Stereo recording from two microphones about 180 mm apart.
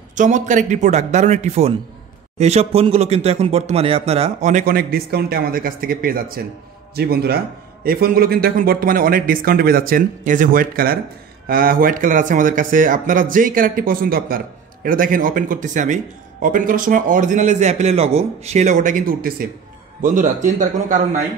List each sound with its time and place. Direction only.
0.1 s speech: 45° right (ahead or behind)